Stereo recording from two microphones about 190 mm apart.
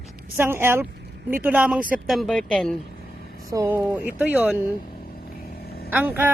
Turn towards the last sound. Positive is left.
turn(degrees=-10)  # may be behind; listen again after turning